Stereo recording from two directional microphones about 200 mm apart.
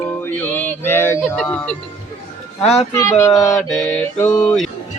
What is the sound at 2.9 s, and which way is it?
Music, 15° left (ahead or behind).